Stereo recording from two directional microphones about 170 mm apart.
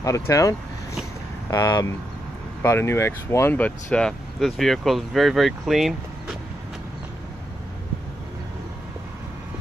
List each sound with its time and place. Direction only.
0.0 s speech: 20° left (ahead or behind); by 6.3 s centre (ahead or behind)